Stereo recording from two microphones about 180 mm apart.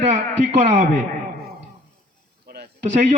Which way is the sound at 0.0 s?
40° right (ahead or behind).